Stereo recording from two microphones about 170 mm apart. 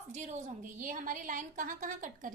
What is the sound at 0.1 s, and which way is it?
A woman's voice, 45° right (ahead or behind).